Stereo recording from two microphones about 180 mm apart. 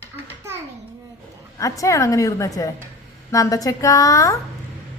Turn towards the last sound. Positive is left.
turn(degrees=20)  # may be behind; listen again after turning